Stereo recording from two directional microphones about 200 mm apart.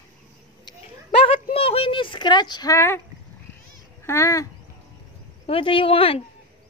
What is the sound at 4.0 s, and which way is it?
Speech, 15° left (ahead or behind).